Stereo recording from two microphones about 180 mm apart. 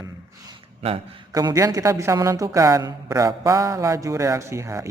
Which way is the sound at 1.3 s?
20° right (ahead or behind).